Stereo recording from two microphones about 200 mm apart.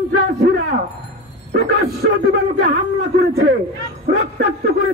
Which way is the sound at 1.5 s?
50° right (ahead or behind).